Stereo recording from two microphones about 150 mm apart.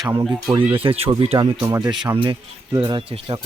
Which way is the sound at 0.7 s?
35° right (ahead or behind).